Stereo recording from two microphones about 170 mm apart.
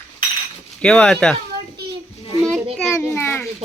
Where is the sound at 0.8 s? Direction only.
5° left (ahead or behind).